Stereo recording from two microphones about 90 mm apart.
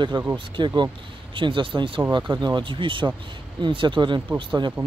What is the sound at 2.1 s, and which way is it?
Speech, 55° right (ahead or behind).